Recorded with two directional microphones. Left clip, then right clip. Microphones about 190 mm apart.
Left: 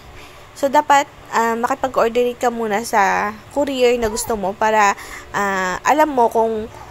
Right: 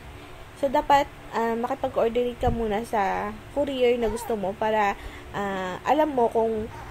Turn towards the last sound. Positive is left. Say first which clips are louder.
# left 7 dB
turn(degrees=35)  # may be behind; listen again after turning